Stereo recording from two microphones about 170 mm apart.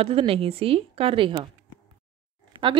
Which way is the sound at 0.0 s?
35° right (ahead or behind).